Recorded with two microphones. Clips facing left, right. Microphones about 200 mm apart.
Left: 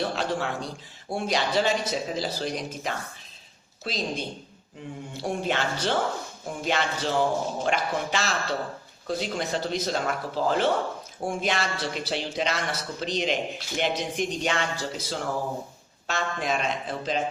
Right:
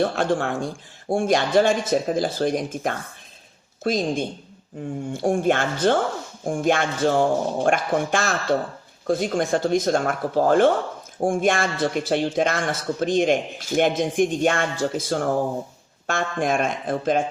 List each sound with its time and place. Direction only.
0.0 s a man's voice: 50° right (ahead or behind)